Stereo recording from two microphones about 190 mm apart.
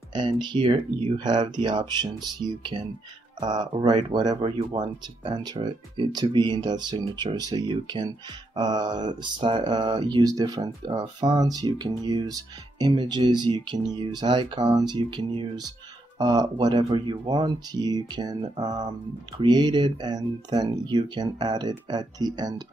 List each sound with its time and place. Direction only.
0.1 s speech: 25° right (ahead or behind)